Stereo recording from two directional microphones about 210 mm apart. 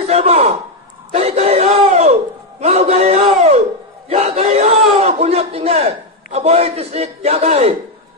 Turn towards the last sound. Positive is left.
turn(degrees=-30)  # may be behind; listen again after turning